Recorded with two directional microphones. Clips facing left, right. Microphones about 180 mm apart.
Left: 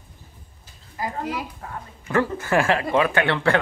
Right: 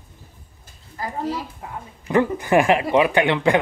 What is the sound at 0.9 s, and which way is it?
Speech, 15° left (ahead or behind).